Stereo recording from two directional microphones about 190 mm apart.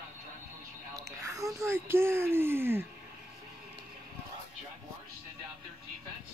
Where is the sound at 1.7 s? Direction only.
15° right (ahead or behind).